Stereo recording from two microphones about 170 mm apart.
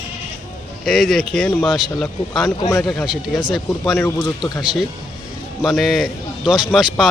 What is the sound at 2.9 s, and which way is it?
Speech, centre (ahead or behind).